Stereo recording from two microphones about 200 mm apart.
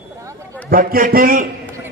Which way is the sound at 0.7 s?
45° right (ahead or behind).